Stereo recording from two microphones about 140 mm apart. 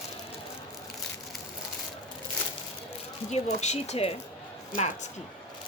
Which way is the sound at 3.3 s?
50° left (ahead or behind).